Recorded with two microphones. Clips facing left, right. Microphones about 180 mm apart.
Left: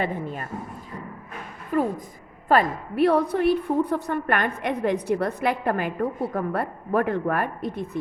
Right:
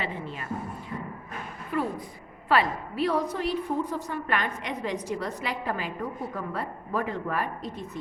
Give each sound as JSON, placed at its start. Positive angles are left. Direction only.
{"t": 0.0, "sound": "a woman's voice", "side_deg": 50}
{"t": 1.7, "sound": "a woman's voice", "side_deg": 40}
{"t": 2.5, "sound": "a woman's voice", "side_deg": 50}